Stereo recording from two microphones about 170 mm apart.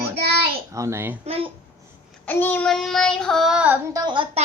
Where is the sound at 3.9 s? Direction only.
25° right (ahead or behind).